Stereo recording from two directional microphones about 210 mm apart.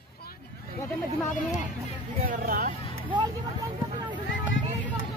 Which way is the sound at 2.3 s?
40° right (ahead or behind).